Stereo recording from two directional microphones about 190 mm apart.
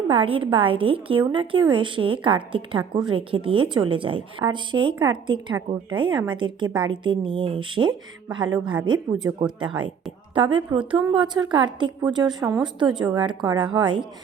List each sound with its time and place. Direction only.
0.1 s a woman's voice: 30° right (ahead or behind)